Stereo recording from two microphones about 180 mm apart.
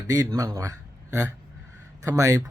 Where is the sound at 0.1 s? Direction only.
20° right (ahead or behind).